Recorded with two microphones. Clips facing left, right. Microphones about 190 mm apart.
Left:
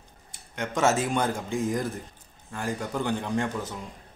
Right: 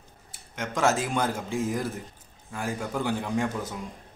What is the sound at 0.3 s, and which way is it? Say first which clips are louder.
Speech: left 2 dB; centre (ahead or behind).